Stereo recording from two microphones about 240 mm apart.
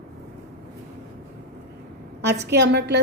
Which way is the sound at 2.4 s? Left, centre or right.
Right.